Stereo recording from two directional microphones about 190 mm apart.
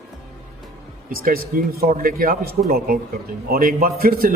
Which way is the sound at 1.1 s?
50° right (ahead or behind).